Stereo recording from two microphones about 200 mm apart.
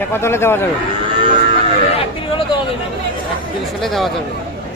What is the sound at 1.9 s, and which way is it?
Speech, 25° left (ahead or behind).